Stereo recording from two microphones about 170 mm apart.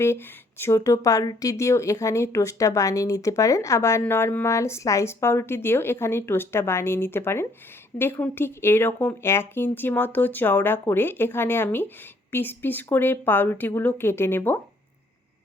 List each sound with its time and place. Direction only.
0.0 s speech: 15° left (ahead or behind)